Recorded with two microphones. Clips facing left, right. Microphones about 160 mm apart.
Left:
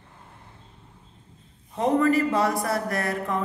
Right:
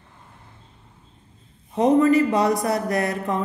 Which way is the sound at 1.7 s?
20° right (ahead or behind).